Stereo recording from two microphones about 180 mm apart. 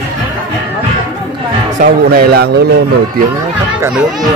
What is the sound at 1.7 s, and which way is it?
Speech, 55° right (ahead or behind).